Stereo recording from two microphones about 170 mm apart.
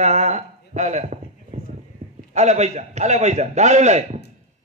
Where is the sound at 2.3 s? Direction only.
40° right (ahead or behind).